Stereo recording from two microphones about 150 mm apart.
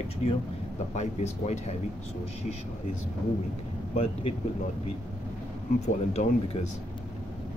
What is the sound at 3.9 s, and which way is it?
Speech, 45° left (ahead or behind).